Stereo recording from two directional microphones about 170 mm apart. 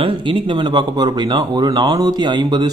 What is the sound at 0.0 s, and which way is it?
Speech, 30° right (ahead or behind).